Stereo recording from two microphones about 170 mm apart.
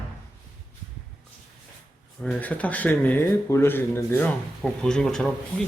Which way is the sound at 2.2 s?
5° left (ahead or behind).